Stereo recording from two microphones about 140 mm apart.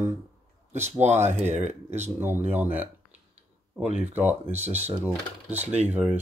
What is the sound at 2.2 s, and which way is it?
Speech, 15° right (ahead or behind).